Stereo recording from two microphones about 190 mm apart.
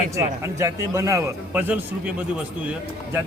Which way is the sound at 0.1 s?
15° right (ahead or behind).